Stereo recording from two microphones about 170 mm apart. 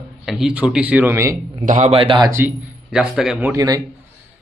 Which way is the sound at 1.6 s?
45° right (ahead or behind).